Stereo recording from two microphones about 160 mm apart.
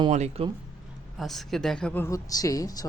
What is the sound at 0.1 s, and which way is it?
Speech, 45° right (ahead or behind).